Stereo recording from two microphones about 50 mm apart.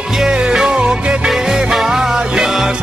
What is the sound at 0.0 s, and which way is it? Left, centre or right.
Music, centre.